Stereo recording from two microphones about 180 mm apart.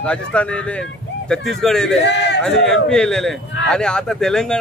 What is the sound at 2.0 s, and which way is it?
Speech, 70° left (ahead or behind).